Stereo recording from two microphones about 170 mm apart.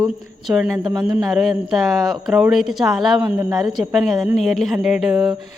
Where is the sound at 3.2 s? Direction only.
10° right (ahead or behind).